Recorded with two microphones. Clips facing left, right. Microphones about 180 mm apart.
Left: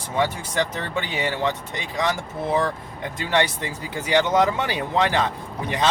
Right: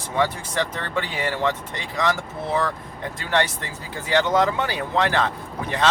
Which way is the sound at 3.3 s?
15° left (ahead or behind).